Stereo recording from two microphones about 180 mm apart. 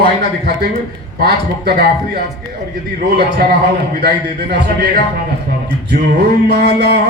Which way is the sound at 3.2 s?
60° right (ahead or behind).